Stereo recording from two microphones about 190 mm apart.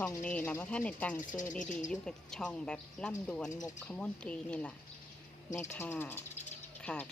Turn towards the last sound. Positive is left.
turn(degrees=5)  # may be behind; listen again after turning